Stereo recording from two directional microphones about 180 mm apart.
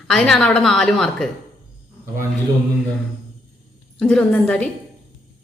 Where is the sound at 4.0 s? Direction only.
5° left (ahead or behind).